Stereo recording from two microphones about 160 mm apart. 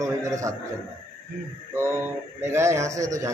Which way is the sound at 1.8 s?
15° right (ahead or behind).